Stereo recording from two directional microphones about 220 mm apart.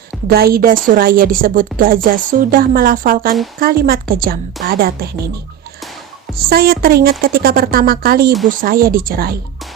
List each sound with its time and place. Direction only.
0.3 s a woman's voice: 45° right (ahead or behind)
6.3 s a woman's voice: 45° right (ahead or behind)